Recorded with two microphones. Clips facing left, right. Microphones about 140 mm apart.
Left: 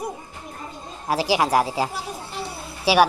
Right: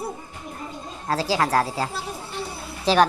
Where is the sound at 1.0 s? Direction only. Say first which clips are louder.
Left 2 dB; 15° left (ahead or behind).